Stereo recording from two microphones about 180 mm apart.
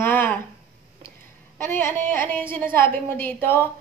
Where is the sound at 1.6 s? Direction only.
15° left (ahead or behind).